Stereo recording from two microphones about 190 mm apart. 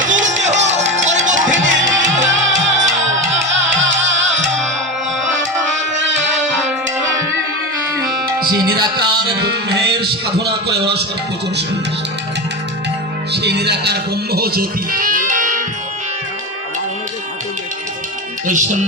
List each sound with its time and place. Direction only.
0.1 s music: 40° right (ahead or behind)
1.5 s music: 85° right
8.5 s music: 20° right (ahead or behind)
9.2 s music: 60° right (ahead or behind)
10.4 s a sound: 60° right (ahead or behind)
13.3 s music: 60° right (ahead or behind); by 15.6 s 45° right (ahead or behind)
18.4 s music: 40° right (ahead or behind)